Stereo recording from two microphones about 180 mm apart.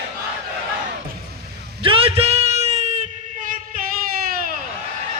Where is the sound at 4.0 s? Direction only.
55° right (ahead or behind).